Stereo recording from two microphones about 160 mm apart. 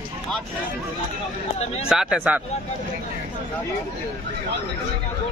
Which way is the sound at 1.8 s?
5° right (ahead or behind).